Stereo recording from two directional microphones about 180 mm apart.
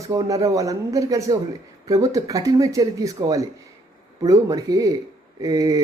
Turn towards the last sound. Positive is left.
turn(degrees=-20)  # may be behind; listen again after turning